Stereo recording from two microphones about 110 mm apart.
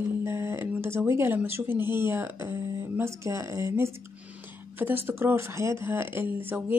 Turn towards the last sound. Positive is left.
turn(degrees=-20)  # may be behind; listen again after turning